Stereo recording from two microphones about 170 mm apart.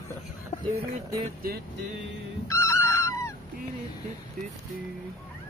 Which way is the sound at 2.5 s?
15° left (ahead or behind).